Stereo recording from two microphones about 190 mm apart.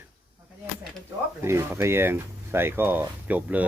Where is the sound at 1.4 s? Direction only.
15° right (ahead or behind).